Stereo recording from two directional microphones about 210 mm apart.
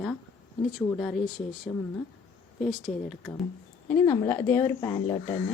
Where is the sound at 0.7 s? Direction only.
Centre (ahead or behind).